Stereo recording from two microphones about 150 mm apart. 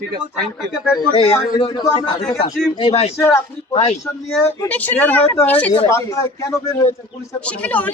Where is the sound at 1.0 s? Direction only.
40° left (ahead or behind).